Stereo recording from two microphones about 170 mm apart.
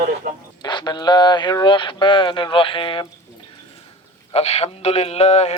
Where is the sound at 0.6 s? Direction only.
25° left (ahead or behind).